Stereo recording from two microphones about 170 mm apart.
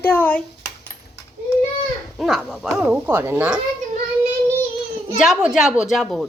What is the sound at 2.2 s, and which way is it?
Speech, 5° left (ahead or behind).